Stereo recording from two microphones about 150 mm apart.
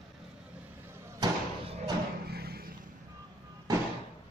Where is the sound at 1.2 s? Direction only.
25° right (ahead or behind).